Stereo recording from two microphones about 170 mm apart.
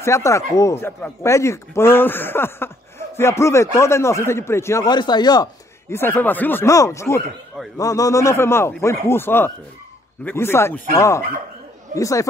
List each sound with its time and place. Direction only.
0.0 s speech: 15° left (ahead or behind)